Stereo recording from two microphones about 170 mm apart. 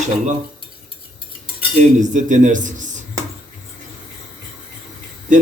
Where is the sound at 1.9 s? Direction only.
50° right (ahead or behind).